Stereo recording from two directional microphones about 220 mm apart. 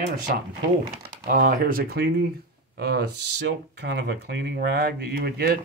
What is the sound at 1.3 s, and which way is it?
Speech, 40° right (ahead or behind).